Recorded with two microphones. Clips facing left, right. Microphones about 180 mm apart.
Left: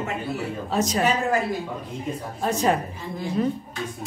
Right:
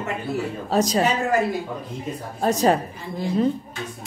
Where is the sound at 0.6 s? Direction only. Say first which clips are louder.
Right 4 dB; 35° right (ahead or behind).